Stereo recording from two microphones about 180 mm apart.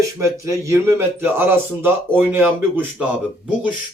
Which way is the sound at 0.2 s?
15° right (ahead or behind).